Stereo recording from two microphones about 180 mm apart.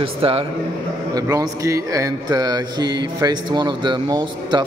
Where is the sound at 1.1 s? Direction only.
20° right (ahead or behind).